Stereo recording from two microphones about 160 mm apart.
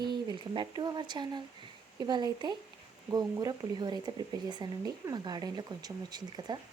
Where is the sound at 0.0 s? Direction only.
30° right (ahead or behind).